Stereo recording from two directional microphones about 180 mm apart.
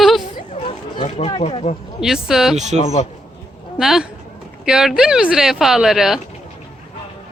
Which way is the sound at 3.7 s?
5° right (ahead or behind).